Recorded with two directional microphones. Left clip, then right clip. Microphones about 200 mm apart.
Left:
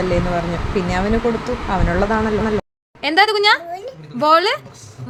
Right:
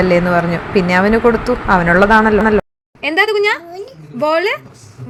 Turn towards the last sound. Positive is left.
turn(degrees=15)  # may be behind; listen again after turning